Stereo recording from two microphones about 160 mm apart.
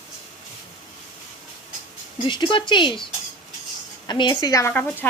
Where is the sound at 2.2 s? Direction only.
30° left (ahead or behind).